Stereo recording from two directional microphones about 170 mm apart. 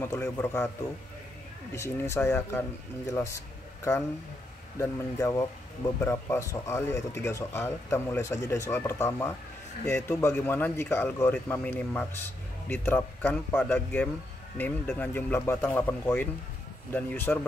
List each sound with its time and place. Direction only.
0.0 s speech: 15° left (ahead or behind)
1.7 s speech: 15° left (ahead or behind)